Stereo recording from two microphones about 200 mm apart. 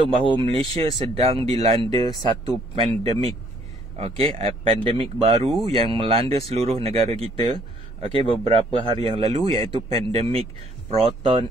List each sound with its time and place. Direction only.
0.0 s speech: 25° right (ahead or behind)